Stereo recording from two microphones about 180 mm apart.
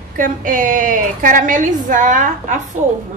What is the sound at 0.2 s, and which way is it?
A woman's voice, 45° right (ahead or behind).